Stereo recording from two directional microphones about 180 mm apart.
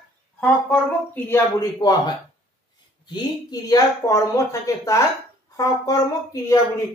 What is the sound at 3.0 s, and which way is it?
Speech, 25° left (ahead or behind).